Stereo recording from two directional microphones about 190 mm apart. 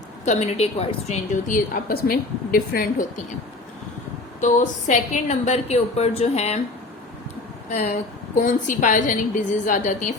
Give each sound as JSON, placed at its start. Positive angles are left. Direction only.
{"t": 0.3, "sound": "a woman's voice", "side_deg": 35}
{"t": 4.4, "sound": "a woman's voice", "side_deg": 40}
{"t": 7.7, "sound": "a woman's voice", "side_deg": 35}